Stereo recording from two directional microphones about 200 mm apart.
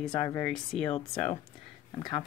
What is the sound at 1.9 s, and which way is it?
Speech, 20° left (ahead or behind).